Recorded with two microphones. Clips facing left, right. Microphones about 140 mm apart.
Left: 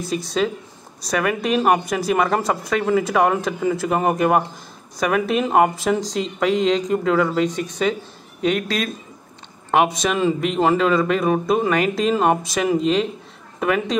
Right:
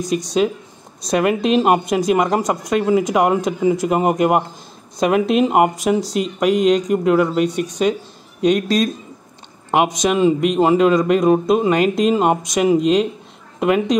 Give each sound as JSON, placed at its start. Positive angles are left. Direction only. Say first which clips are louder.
{"t": 0.0, "sound": "a woman's voice", "louder": "right 4 dB", "side_deg": -15}